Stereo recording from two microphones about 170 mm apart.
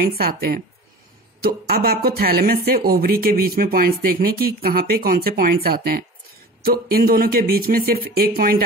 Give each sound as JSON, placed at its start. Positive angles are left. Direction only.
{"t": 0.0, "sound": "speech", "side_deg": -60}